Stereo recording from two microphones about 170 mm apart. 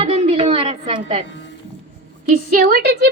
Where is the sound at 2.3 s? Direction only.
65° right (ahead or behind).